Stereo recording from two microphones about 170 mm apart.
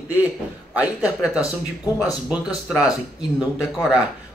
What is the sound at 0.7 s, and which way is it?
A man's voice, 10° right (ahead or behind).